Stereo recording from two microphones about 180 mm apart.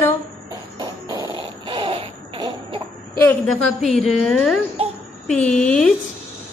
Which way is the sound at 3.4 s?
Centre (ahead or behind).